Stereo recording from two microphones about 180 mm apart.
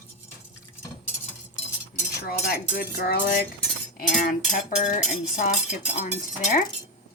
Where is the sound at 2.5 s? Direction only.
60° left (ahead or behind).